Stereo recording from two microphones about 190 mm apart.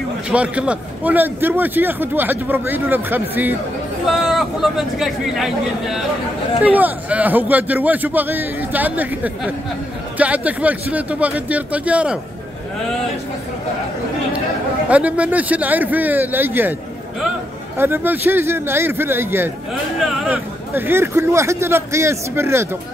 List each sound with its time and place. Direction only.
0.3 s a man's voice: 5° right (ahead or behind)
14.9 s a man's voice: 5° right (ahead or behind)
17.7 s a man's voice: 10° right (ahead or behind)
19.7 s speech: centre (ahead or behind)
20.7 s a man's voice: 10° right (ahead or behind)